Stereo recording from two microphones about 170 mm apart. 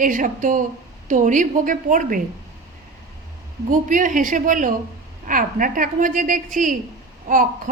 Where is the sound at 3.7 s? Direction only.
50° right (ahead or behind).